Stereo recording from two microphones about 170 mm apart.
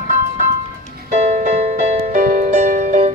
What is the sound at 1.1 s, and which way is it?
Music, 45° right (ahead or behind).